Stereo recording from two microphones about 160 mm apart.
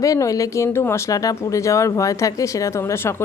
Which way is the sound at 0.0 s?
20° left (ahead or behind).